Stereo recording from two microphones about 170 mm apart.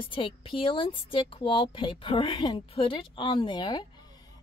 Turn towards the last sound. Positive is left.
turn(degrees=25)  # may be behind; listen again after turning